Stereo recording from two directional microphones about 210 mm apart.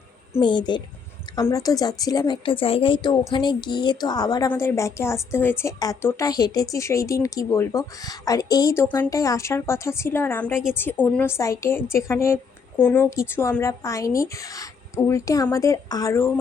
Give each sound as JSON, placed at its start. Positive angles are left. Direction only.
{"t": 0.3, "sound": "a woman's voice", "side_deg": 20}